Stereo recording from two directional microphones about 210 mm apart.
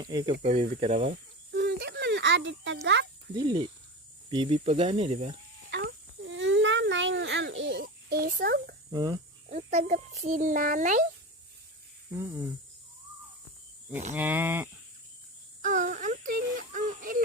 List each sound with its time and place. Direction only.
0.0 s speech: 20° right (ahead or behind)
0.4 s a child's voice: 30° right (ahead or behind)
1.5 s a sound: 50° right (ahead or behind)
3.3 s speech: 20° right (ahead or behind)
5.7 s a sound: 60° right (ahead or behind)
8.2 s speech: 45° right (ahead or behind)
8.9 s speech: 20° right (ahead or behind)
9.5 s a child's voice: 35° right (ahead or behind)
12.1 s speech: 15° right (ahead or behind)
14.1 s speech: 10° right (ahead or behind)
15.6 s synthetic singing: 35° right (ahead or behind)